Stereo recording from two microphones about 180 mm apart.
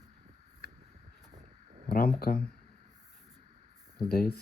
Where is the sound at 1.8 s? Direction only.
55° left (ahead or behind).